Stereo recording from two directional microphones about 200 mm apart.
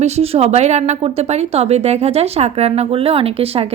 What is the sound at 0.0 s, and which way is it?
Speech, 30° right (ahead or behind).